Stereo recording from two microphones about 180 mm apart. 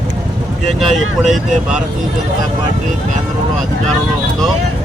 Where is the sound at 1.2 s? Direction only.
5° right (ahead or behind).